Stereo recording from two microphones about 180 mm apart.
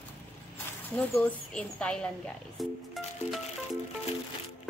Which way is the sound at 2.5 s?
Centre (ahead or behind).